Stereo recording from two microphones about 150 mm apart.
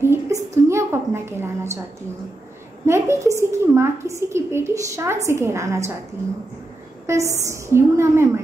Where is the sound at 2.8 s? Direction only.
20° right (ahead or behind).